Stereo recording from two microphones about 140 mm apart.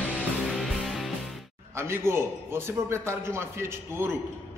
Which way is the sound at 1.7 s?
20° right (ahead or behind).